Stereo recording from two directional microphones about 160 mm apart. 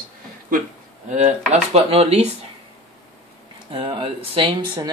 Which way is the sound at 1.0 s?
45° right (ahead or behind).